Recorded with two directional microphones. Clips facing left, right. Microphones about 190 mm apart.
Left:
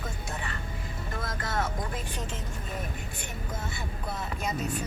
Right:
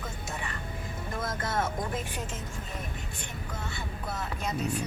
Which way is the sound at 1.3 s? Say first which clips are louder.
Right 1 dB; 25° right (ahead or behind).